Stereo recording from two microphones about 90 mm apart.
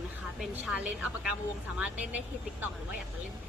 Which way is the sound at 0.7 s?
15° right (ahead or behind).